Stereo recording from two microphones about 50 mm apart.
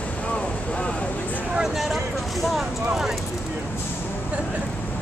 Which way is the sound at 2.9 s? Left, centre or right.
Centre.